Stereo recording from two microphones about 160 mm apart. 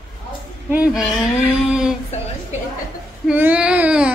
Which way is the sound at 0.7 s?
5° right (ahead or behind).